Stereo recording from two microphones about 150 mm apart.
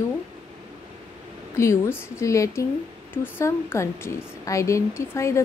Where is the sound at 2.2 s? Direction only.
20° left (ahead or behind).